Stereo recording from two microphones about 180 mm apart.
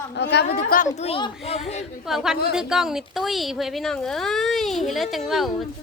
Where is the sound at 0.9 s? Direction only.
30° left (ahead or behind).